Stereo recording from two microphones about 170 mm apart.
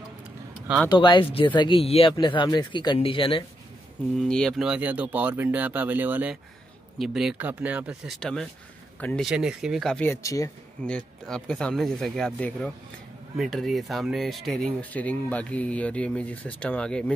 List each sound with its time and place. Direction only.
0.8 s speech: 30° left (ahead or behind)
4.2 s speech: 5° left (ahead or behind)
9.3 s speech: 5° right (ahead or behind)
10.2 s speech: 20° left (ahead or behind)
10.9 s speech: 5° left (ahead or behind)